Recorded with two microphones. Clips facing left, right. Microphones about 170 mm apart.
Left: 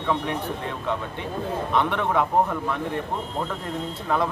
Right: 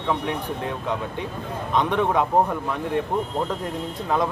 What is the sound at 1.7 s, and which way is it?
Speech, 15° right (ahead or behind).